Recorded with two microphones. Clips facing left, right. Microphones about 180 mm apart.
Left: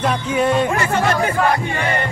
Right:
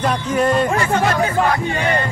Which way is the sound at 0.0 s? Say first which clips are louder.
Even; 5° left (ahead or behind).